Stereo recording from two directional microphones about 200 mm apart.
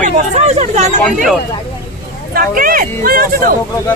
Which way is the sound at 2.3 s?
45° right (ahead or behind).